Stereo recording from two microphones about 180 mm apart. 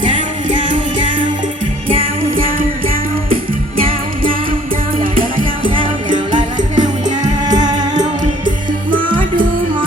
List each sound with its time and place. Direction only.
0.7 s music: 25° right (ahead or behind)
6.1 s music: 45° right (ahead or behind)
7.4 s music: 20° right (ahead or behind)
8.9 s music: 50° right (ahead or behind)